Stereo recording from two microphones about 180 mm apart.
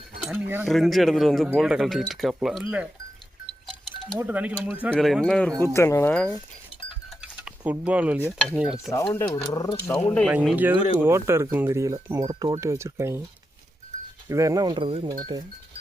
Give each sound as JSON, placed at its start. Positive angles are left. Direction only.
{"t": 0.3, "sound": "speech", "side_deg": -10}
{"t": 0.7, "sound": "speech", "side_deg": 0}
{"t": 4.2, "sound": "speech", "side_deg": -10}
{"t": 7.2, "sound": "a sound", "side_deg": -5}
{"t": 8.4, "sound": "speech", "side_deg": -5}
{"t": 9.1, "sound": "speech", "side_deg": 20}
{"t": 10.2, "sound": "speech", "side_deg": -5}
{"t": 14.3, "sound": "speech", "side_deg": -15}